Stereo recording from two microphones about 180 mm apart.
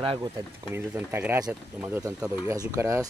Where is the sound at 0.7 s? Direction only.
10° right (ahead or behind).